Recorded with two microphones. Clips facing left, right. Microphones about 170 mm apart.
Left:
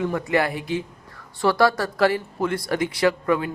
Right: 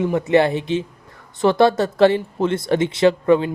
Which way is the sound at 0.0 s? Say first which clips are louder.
Right 6 dB; 20° right (ahead or behind).